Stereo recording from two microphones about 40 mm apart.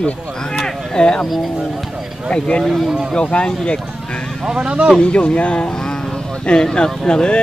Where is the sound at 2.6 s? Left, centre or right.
Centre.